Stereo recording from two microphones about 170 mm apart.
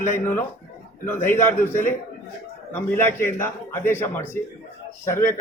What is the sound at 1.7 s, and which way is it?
Speech, 50° left (ahead or behind).